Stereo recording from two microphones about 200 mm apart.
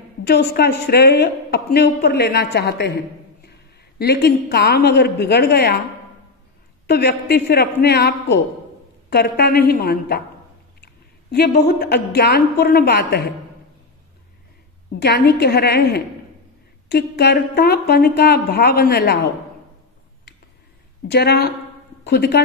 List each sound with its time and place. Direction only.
0.3 s a woman's voice: 55° left (ahead or behind)
4.0 s a woman's voice: 55° left (ahead or behind)
6.9 s a woman's voice: 55° left (ahead or behind)
11.3 s a woman's voice: 55° left (ahead or behind)
15.0 s a woman's voice: 55° left (ahead or behind)
21.1 s a woman's voice: 55° left (ahead or behind)